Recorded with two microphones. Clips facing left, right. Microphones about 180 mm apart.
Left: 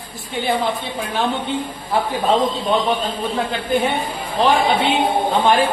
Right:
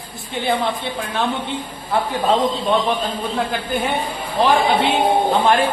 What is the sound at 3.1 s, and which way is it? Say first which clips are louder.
Speech: even; centre (ahead or behind).